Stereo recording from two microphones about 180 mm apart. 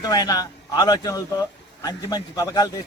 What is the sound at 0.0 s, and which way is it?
A man's voice, 20° left (ahead or behind).